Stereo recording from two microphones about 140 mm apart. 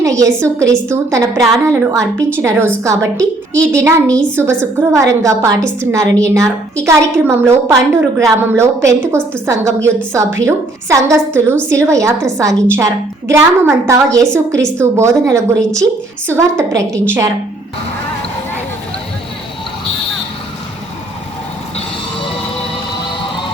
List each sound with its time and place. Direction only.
0.0 s a woman's voice: 20° right (ahead or behind)
1.4 s a woman's voice: 20° right (ahead or behind)
4.1 s a woman's voice: 10° left (ahead or behind)
4.6 s a woman's voice: 20° right (ahead or behind)